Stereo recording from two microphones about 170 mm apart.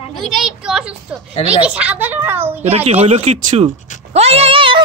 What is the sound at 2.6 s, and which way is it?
Speech, 35° right (ahead or behind).